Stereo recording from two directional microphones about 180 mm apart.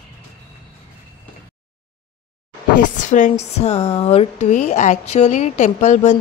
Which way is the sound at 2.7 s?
45° left (ahead or behind).